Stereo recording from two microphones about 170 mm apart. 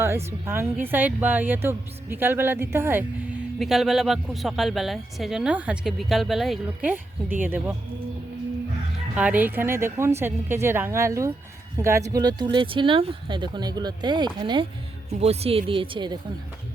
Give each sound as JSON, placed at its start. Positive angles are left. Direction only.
{"t": 0.3, "sound": "a woman's voice", "side_deg": -15}
{"t": 3.6, "sound": "speech", "side_deg": 0}
{"t": 7.4, "sound": "a woman's voice", "side_deg": -10}
{"t": 9.1, "sound": "a woman's voice", "side_deg": -10}